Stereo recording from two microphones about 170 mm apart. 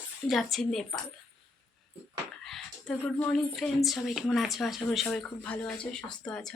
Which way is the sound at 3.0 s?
5° left (ahead or behind).